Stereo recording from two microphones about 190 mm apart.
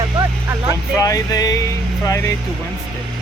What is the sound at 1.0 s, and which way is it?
Speech, 20° left (ahead or behind).